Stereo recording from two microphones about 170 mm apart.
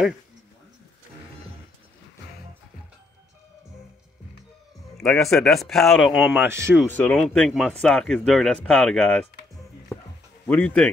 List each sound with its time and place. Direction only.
4.9 s speech: 5° left (ahead or behind)
6.3 s speech: 15° right (ahead or behind)
6.9 s speech: 10° left (ahead or behind)
9.9 s music: centre (ahead or behind)
10.4 s speech: 5° left (ahead or behind)